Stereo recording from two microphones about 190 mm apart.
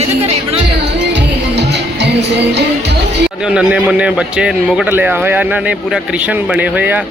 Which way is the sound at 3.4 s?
5° right (ahead or behind).